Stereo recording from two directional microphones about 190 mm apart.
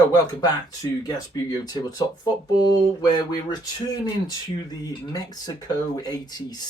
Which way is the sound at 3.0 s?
20° left (ahead or behind).